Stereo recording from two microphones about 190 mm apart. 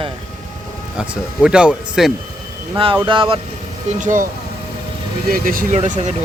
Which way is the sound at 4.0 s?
40° right (ahead or behind).